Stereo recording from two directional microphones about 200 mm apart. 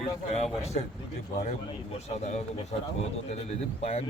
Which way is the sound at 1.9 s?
35° left (ahead or behind).